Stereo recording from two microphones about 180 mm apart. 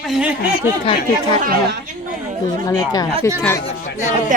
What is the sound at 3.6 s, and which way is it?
Speech, 40° left (ahead or behind).